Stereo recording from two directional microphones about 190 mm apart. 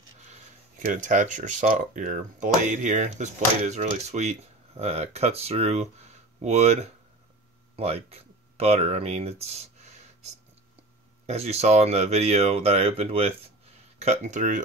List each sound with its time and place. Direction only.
0.7 s speech: 40° right (ahead or behind)